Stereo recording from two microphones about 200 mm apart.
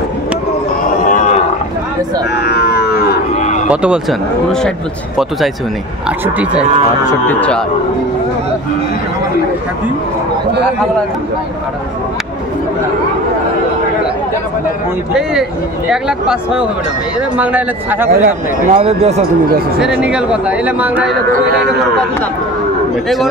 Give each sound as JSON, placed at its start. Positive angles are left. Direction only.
{"t": 1.0, "sound": "wild animals", "side_deg": 40}
{"t": 2.3, "sound": "livestock", "side_deg": 55}
{"t": 3.3, "sound": "cattle", "side_deg": 35}
{"t": 3.6, "sound": "speech", "side_deg": -5}
{"t": 6.0, "sound": "speech", "side_deg": -5}
{"t": 7.1, "sound": "speech", "side_deg": 10}
{"t": 15.9, "sound": "speech", "side_deg": -5}
{"t": 18.1, "sound": "speech", "side_deg": -45}
{"t": 18.8, "sound": "speech", "side_deg": -30}
{"t": 19.8, "sound": "speech", "side_deg": -5}